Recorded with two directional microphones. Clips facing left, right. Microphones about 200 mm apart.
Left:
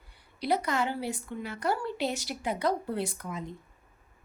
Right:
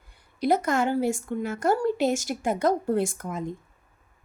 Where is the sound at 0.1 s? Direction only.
50° right (ahead or behind).